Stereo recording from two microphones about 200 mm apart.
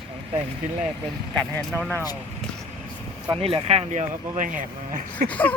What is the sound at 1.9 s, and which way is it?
Speech, 20° left (ahead or behind).